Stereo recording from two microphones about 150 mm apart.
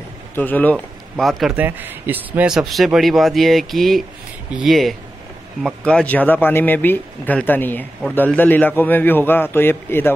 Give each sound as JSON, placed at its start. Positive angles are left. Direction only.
{"t": 0.4, "sound": "speech", "side_deg": 10}
{"t": 1.6, "sound": "speech", "side_deg": -10}